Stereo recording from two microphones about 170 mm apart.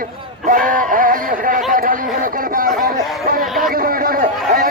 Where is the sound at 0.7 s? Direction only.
55° right (ahead or behind).